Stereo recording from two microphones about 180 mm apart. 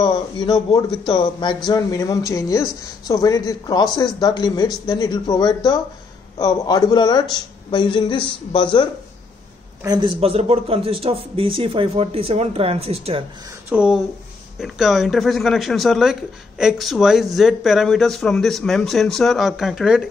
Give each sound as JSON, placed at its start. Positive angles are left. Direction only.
{"t": 0.0, "sound": "a man's voice", "side_deg": 20}
{"t": 9.8, "sound": "a man's voice", "side_deg": -25}
{"t": 13.7, "sound": "speech", "side_deg": -5}